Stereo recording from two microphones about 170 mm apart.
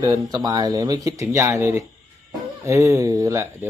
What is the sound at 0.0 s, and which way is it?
Speech, 20° right (ahead or behind).